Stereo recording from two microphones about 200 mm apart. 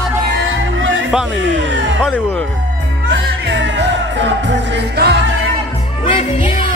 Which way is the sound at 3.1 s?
65° right (ahead or behind).